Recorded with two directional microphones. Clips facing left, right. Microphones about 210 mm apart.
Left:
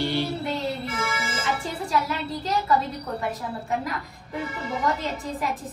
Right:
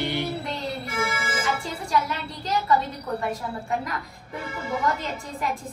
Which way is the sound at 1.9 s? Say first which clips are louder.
Even; centre (ahead or behind).